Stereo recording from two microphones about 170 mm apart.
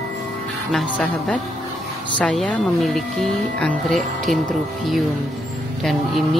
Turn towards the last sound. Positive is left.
turn(degrees=0)  # may be behind; listen again after turning